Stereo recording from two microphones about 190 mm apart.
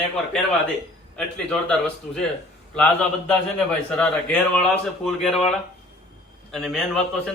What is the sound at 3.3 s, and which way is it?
Speech, 5° left (ahead or behind).